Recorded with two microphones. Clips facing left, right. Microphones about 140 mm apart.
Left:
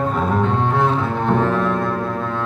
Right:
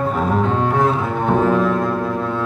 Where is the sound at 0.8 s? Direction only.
5° right (ahead or behind).